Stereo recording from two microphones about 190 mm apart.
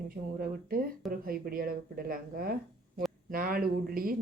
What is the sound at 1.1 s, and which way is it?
Speech, 50° right (ahead or behind).